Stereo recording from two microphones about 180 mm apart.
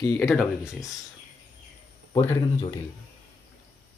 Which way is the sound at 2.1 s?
20° left (ahead or behind).